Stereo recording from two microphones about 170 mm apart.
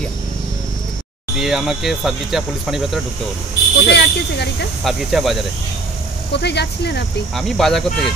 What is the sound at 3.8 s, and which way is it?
Speech, 75° left (ahead or behind).